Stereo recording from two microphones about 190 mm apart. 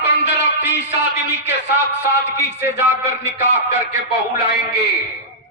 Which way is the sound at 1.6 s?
65° left (ahead or behind).